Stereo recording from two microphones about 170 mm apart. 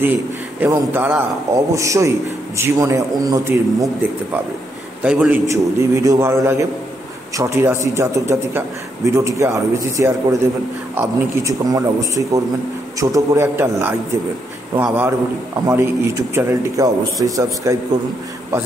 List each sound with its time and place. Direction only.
0.6 s a man's voice: 10° right (ahead or behind)